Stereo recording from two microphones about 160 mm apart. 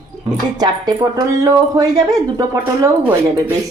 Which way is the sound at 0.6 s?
25° right (ahead or behind).